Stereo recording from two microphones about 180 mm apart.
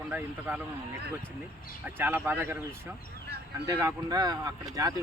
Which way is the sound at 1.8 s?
10° right (ahead or behind).